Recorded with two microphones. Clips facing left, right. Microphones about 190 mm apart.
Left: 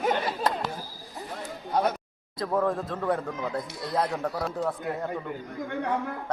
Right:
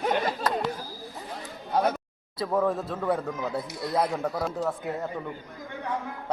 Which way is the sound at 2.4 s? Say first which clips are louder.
Right 1 dB; 5° right (ahead or behind).